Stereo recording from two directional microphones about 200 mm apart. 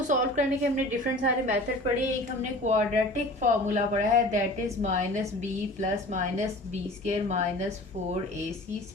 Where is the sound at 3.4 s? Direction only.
35° right (ahead or behind).